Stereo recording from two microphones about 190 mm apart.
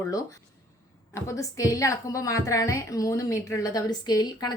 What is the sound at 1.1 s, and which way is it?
A woman's voice, 15° left (ahead or behind).